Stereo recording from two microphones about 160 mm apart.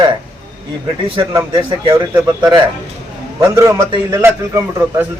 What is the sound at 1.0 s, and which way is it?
A man's voice, 30° right (ahead or behind).